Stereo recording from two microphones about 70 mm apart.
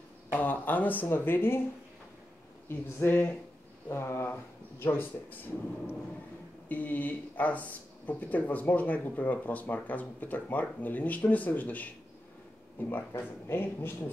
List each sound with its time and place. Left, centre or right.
0.3 s speech: left
2.7 s speech: left
12.9 s speech: left